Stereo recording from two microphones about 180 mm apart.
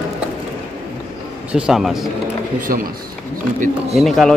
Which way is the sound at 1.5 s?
5° right (ahead or behind).